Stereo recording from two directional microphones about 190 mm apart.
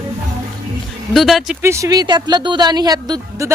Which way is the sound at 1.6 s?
15° right (ahead or behind).